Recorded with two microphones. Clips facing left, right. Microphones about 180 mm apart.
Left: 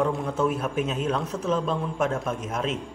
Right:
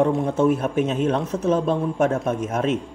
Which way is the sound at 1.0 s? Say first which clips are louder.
Right 5 dB; 55° right (ahead or behind).